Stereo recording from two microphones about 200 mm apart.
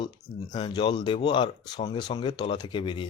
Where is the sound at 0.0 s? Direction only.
20° left (ahead or behind).